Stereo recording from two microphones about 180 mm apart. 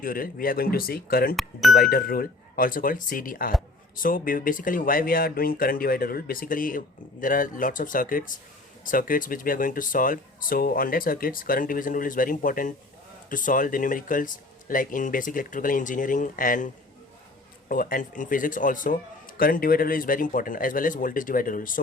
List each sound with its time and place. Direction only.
0.0 s speech: 50° left (ahead or behind)
17.7 s speech: 50° left (ahead or behind)